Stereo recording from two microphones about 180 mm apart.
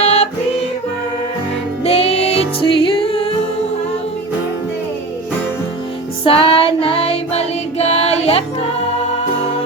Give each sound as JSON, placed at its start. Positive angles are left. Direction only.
{"t": 0.0, "sound": "music", "side_deg": 35}
{"t": 1.8, "sound": "music", "side_deg": 35}
{"t": 6.2, "sound": "music", "side_deg": 30}